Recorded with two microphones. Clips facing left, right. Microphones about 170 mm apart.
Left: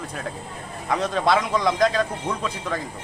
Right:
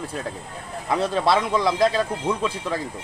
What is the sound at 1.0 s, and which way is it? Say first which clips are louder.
Speech: right 1 dB; 30° right (ahead or behind).